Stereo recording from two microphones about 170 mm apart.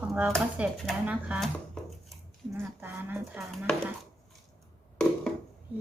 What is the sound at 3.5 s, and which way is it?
Speech, centre (ahead or behind).